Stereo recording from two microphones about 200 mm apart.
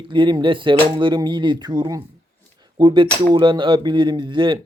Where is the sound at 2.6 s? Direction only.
20° right (ahead or behind).